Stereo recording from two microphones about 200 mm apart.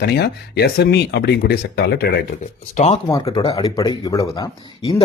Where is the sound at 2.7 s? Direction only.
35° left (ahead or behind).